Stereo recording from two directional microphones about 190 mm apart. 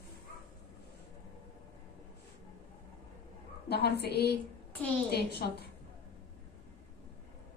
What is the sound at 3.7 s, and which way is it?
A woman's voice, 60° left (ahead or behind).